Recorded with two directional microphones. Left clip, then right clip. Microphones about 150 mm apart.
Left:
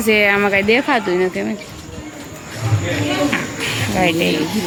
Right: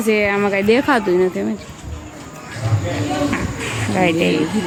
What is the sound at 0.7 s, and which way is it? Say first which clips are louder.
Speech: even; 30° right (ahead or behind).